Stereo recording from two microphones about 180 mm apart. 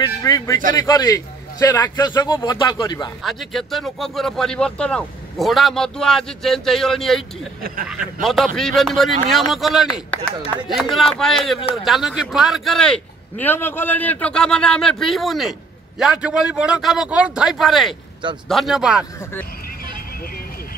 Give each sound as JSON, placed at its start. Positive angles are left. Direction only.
{"t": 0.0, "sound": "a sound", "side_deg": 20}
{"t": 0.7, "sound": "a man's voice", "side_deg": 20}
{"t": 3.2, "sound": "speech", "side_deg": 0}